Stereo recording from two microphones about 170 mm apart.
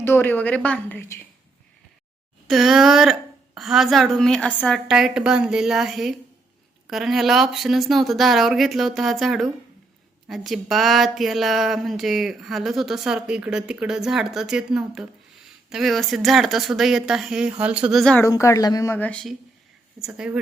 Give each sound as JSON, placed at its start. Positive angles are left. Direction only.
{"t": 0.0, "sound": "a woman's voice", "side_deg": 15}
{"t": 2.5, "sound": "speech", "side_deg": 0}
{"t": 18.2, "sound": "a woman's voice", "side_deg": 15}